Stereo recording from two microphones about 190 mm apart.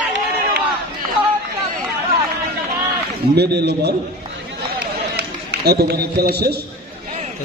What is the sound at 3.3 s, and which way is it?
Speech, 60° right (ahead or behind).